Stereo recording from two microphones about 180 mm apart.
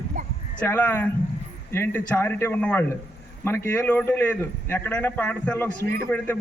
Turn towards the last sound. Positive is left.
turn(degrees=-55)  # may be behind; listen again after turning